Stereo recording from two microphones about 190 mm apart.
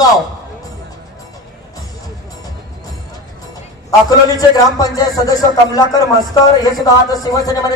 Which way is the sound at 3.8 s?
20° left (ahead or behind).